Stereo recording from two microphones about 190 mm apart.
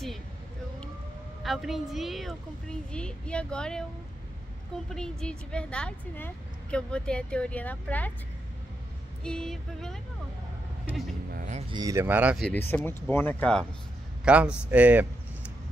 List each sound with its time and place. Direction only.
1.4 s speech: centre (ahead or behind)
4.8 s speech: 5° left (ahead or behind)
9.2 s speech: 5° left (ahead or behind)
11.3 s speech: 40° right (ahead or behind)
11.7 s speech: 20° right (ahead or behind)
12.4 s speech: 10° left (ahead or behind)
14.2 s a man's voice: 5° right (ahead or behind)
14.7 s a sound: 10° right (ahead or behind)